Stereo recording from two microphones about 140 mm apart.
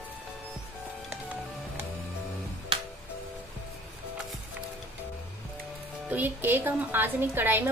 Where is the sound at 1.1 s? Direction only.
10° right (ahead or behind).